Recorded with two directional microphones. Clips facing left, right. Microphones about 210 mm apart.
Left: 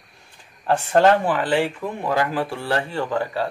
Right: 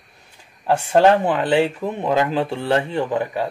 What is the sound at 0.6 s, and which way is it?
Speech, 10° right (ahead or behind).